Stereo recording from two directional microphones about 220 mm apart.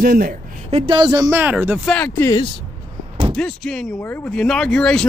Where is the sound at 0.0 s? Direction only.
40° right (ahead or behind).